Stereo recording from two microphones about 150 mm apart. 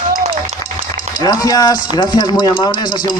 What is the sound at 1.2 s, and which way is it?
Speech, 25° left (ahead or behind).